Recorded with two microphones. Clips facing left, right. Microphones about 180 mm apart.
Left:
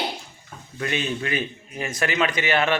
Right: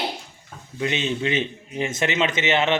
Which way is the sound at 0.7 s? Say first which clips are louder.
Right 2 dB; 20° right (ahead or behind).